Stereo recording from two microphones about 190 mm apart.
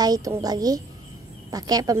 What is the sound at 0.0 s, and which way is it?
A child's voice, 20° right (ahead or behind).